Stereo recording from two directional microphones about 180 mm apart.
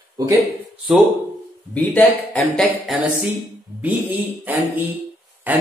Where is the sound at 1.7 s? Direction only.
10° left (ahead or behind).